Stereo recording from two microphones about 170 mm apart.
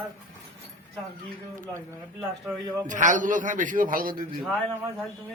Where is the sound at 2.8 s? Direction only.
50° right (ahead or behind).